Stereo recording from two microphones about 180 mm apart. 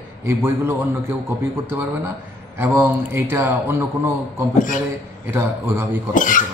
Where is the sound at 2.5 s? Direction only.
10° right (ahead or behind).